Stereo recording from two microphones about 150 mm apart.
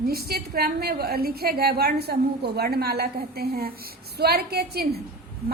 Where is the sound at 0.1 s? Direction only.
90° right.